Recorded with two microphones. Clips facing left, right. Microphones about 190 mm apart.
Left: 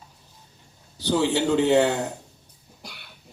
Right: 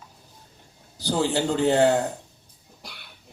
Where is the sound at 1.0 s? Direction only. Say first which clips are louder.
Left 2 dB; 65° left (ahead or behind).